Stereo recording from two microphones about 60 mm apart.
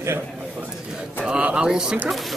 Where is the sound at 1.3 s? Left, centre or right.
Centre.